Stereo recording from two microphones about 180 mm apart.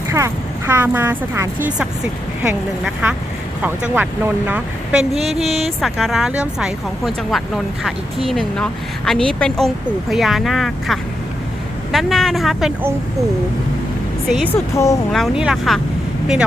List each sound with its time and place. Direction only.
0.7 s speech: 15° right (ahead or behind)
2.8 s speech: 5° right (ahead or behind)
14.3 s speech: centre (ahead or behind)
14.5 s speech: 15° left (ahead or behind)
15.1 s speech: centre (ahead or behind)